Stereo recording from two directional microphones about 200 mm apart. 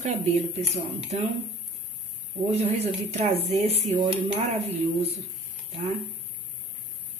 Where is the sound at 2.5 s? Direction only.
30° right (ahead or behind).